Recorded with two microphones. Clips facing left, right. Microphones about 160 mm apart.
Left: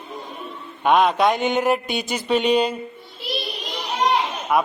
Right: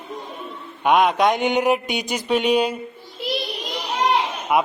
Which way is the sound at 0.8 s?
10° right (ahead or behind).